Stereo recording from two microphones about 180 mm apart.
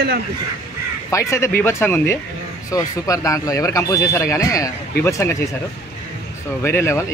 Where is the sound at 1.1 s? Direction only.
15° left (ahead or behind).